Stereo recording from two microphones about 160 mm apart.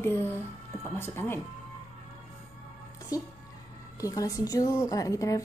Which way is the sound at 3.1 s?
20° left (ahead or behind).